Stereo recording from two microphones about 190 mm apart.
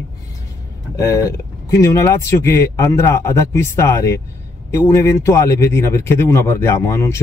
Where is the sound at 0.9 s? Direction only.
15° left (ahead or behind).